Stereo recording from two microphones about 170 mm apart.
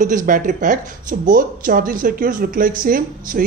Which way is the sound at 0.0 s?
50° right (ahead or behind).